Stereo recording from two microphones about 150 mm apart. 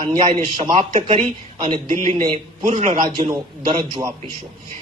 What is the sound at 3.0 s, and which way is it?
A man's voice, 30° right (ahead or behind).